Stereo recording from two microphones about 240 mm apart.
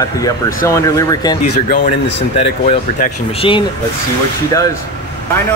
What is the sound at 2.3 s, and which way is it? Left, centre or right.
Speech, left.